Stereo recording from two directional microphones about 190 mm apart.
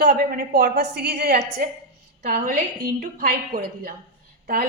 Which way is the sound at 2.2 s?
45° right (ahead or behind).